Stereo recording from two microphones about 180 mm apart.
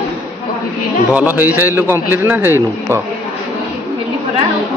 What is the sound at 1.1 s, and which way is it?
A man's voice, 10° right (ahead or behind).